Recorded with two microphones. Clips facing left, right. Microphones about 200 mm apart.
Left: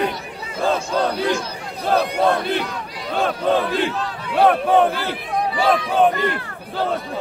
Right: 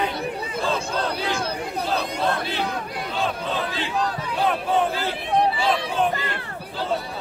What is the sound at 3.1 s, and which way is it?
Crowd, 55° left (ahead or behind).